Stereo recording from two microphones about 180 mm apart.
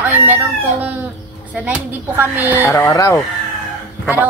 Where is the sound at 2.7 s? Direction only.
15° left (ahead or behind).